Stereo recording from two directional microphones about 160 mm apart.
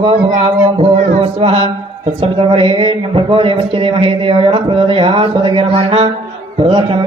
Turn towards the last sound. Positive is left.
turn(degrees=-30)  # may be behind; listen again after turning